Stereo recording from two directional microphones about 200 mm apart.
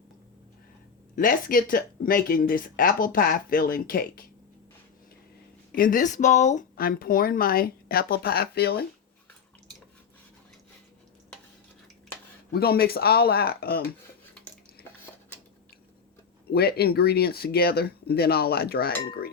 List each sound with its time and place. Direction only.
1.1 s speech: 45° left (ahead or behind)
5.7 s speech: 45° left (ahead or behind)
12.5 s speech: 50° left (ahead or behind)
16.5 s speech: 50° left (ahead or behind)